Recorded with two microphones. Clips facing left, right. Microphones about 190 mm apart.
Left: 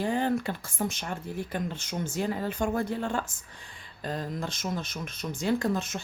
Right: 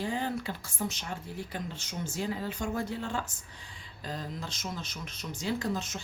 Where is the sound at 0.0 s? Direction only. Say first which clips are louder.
Left 6 dB; 55° left (ahead or behind).